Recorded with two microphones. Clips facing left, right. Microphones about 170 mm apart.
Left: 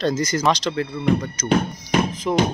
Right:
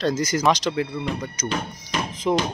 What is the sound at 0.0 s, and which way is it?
Speech, 10° right (ahead or behind).